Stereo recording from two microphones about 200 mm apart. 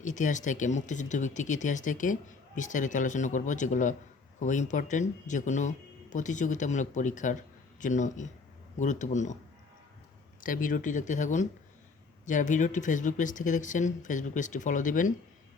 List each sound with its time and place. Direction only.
0.0 s speech: 40° left (ahead or behind)
10.4 s speech: 45° left (ahead or behind)